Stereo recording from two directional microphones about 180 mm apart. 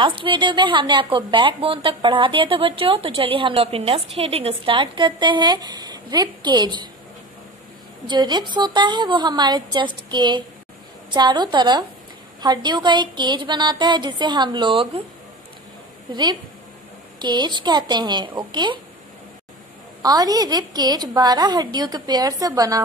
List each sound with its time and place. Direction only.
0.0 s a woman's voice: 30° right (ahead or behind)
8.1 s a woman's voice: 25° right (ahead or behind)
16.1 s a woman's voice: 25° right (ahead or behind)
20.0 s a woman's voice: 20° right (ahead or behind)